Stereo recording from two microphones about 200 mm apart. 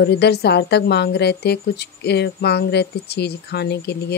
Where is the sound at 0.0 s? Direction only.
55° left (ahead or behind).